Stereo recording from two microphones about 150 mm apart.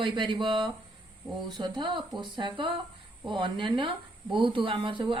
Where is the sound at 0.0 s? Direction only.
35° right (ahead or behind).